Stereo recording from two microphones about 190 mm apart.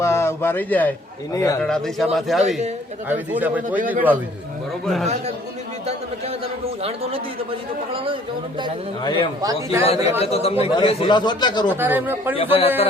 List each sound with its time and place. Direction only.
0.0 s a man's voice: 15° left (ahead or behind)
1.6 s speech: centre (ahead or behind)
5.8 s a man's voice: 35° right (ahead or behind)
7.9 s a man's voice: 30° right (ahead or behind)
9.0 s a man's voice: 25° left (ahead or behind)
9.4 s a man's voice: 20° right (ahead or behind)
9.8 s a man's voice: 30° left (ahead or behind)
11.7 s speech: 10° right (ahead or behind)
12.4 s speech: 30° left (ahead or behind)